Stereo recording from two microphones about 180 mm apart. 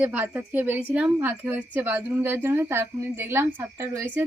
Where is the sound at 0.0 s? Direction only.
10° right (ahead or behind).